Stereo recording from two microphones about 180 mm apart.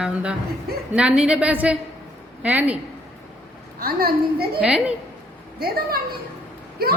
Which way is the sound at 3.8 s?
60° right (ahead or behind).